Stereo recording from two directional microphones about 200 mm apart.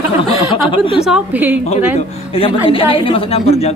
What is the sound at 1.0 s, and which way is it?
Speech, 5° right (ahead or behind).